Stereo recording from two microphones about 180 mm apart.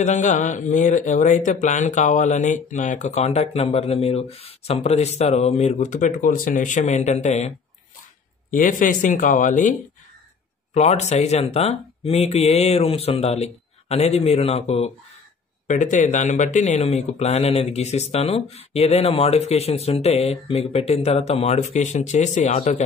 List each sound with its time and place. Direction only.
0.0 s speech: 45° left (ahead or behind)